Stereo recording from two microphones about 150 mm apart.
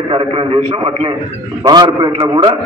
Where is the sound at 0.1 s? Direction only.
35° right (ahead or behind).